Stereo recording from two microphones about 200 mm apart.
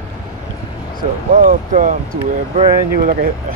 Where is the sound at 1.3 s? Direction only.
40° right (ahead or behind).